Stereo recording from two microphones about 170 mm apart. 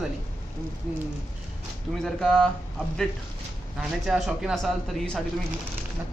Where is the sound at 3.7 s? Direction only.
5° right (ahead or behind).